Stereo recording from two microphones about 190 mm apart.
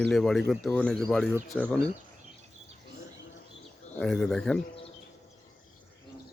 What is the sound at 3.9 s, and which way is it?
Speech, 5° left (ahead or behind).